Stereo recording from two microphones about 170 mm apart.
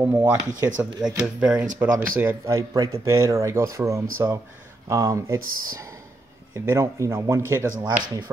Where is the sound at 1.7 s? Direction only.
15° right (ahead or behind).